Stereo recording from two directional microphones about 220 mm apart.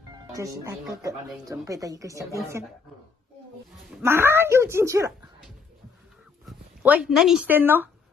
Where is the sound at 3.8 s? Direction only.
5° right (ahead or behind).